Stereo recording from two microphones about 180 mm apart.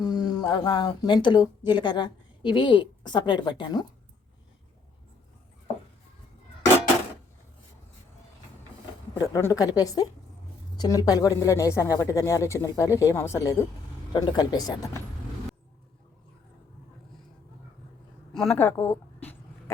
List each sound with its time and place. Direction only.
0.0 s a woman's voice: 20° left (ahead or behind)
9.1 s a woman's voice: 20° left (ahead or behind)
18.3 s a sound: 5° left (ahead or behind)